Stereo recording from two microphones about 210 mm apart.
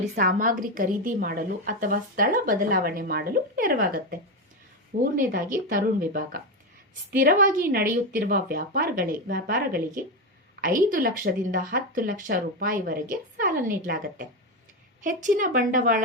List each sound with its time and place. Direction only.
0.0 s a woman's voice: 40° right (ahead or behind)